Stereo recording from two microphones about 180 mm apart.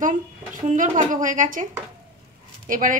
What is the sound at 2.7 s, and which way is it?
Speech, 50° right (ahead or behind).